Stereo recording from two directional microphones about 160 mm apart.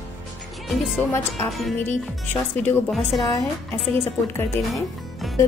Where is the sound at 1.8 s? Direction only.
15° left (ahead or behind).